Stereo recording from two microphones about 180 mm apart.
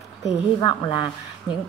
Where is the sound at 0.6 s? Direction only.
25° left (ahead or behind).